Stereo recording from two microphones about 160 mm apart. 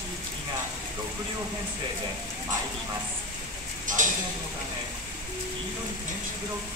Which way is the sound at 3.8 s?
55° right (ahead or behind).